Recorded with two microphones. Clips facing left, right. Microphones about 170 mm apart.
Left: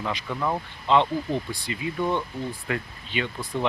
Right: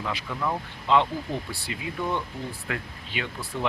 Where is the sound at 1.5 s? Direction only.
5° right (ahead or behind).